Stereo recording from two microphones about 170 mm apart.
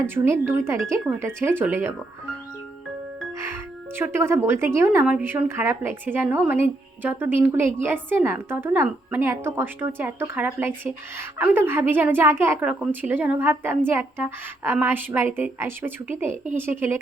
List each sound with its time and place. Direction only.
0.0 s a woman's voice: 15° right (ahead or behind)
3.4 s a woman's voice: 15° right (ahead or behind)